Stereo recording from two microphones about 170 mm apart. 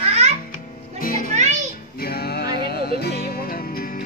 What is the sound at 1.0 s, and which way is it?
Music, 55° left (ahead or behind).